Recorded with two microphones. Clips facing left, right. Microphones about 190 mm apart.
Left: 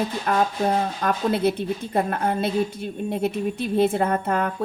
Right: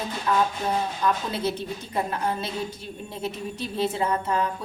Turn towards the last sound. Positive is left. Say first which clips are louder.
# left 3 dB
turn(degrees=55)  # may be behind; listen again after turning